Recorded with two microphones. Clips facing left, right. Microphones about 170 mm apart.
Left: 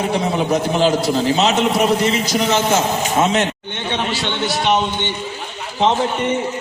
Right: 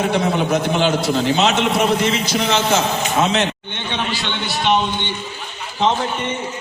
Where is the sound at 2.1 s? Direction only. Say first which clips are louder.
Left 2 dB; 40° left (ahead or behind).